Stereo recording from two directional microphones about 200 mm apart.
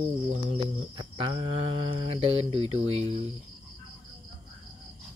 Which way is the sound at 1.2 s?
25° right (ahead or behind).